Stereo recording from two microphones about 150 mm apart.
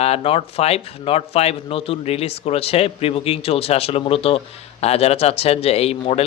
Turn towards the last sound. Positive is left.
turn(degrees=45)  # may be behind; listen again after turning